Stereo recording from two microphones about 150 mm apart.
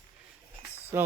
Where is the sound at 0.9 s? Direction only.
15° right (ahead or behind).